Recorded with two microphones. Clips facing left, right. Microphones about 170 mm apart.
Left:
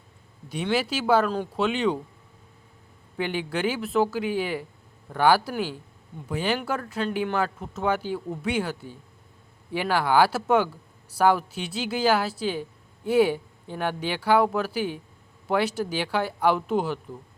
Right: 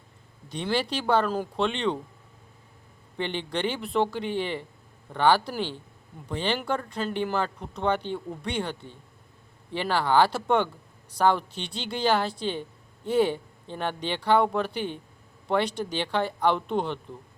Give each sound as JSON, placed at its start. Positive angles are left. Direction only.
{"t": 0.4, "sound": "speech", "side_deg": 5}
{"t": 1.6, "sound": "speech", "side_deg": 5}
{"t": 3.2, "sound": "speech", "side_deg": 5}